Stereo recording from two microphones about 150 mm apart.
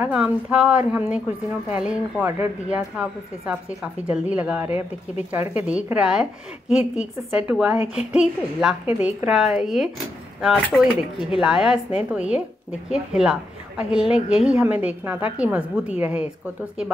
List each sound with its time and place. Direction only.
0.0 s speech: 5° right (ahead or behind)
7.3 s a woman's voice: 10° right (ahead or behind)